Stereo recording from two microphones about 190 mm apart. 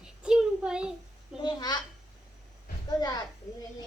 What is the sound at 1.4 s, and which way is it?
Speech, 20° left (ahead or behind).